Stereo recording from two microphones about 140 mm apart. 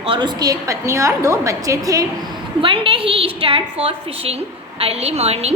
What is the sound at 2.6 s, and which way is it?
A woman's voice, 40° right (ahead or behind).